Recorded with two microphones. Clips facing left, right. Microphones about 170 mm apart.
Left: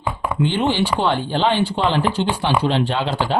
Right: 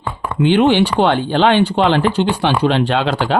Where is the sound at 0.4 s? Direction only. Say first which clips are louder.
Right 8 dB; 70° right (ahead or behind).